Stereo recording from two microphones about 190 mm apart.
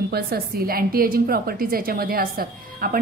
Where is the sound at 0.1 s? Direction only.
55° right (ahead or behind).